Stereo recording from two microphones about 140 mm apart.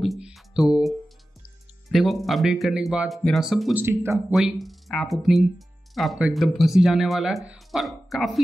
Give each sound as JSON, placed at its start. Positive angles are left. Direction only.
{"t": 0.0, "sound": "speech", "side_deg": 0}
{"t": 3.7, "sound": "speech", "side_deg": -15}
{"t": 4.3, "sound": "speech", "side_deg": 0}